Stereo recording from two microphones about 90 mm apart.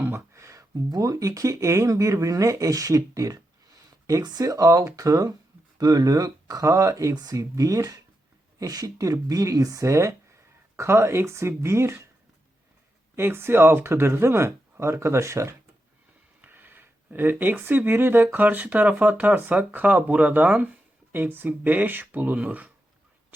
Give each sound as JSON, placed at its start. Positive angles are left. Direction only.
{"t": 0.0, "sound": "speech", "side_deg": -30}
{"t": 13.1, "sound": "speech", "side_deg": -25}
{"t": 16.4, "sound": "speech", "side_deg": -20}